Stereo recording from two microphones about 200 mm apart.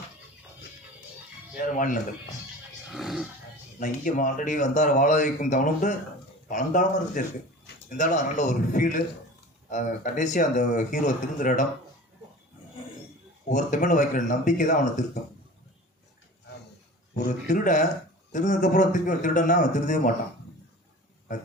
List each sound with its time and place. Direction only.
1.7 s speech: 40° left (ahead or behind)
2.9 s speech: centre (ahead or behind)
3.8 s speech: 40° left (ahead or behind)
13.5 s speech: 40° left (ahead or behind)
17.2 s speech: 40° left (ahead or behind)